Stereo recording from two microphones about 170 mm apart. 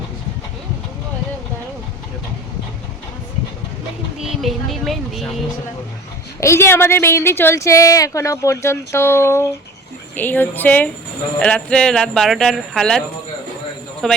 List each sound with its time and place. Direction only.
4.2 s speech: centre (ahead or behind)
6.4 s a woman's voice: 15° left (ahead or behind)
14.0 s speech: centre (ahead or behind)